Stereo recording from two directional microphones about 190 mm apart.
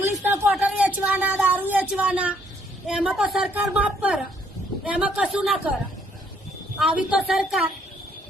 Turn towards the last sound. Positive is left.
turn(degrees=0)  # may be behind; listen again after turning